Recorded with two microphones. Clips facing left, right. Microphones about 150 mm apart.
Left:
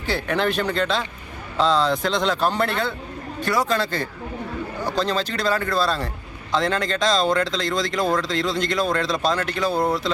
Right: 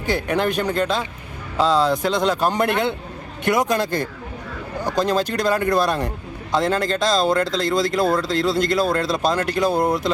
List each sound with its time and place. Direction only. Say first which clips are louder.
0.0 s speech: right 2 dB; 15° right (ahead or behind)